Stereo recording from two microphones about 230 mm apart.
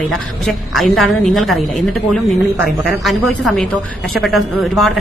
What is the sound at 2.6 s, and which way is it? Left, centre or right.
Speech, centre.